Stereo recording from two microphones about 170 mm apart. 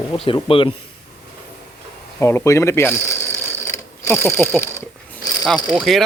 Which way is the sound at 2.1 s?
15° left (ahead or behind).